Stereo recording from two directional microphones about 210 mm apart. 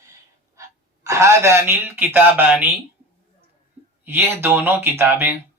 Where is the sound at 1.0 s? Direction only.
15° right (ahead or behind).